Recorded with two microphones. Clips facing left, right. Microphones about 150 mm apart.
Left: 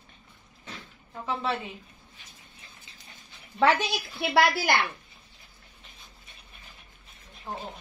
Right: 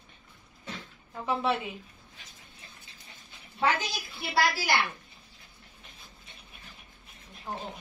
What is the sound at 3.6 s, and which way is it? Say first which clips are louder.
A woman's voice: left 5 dB; 70° left (ahead or behind).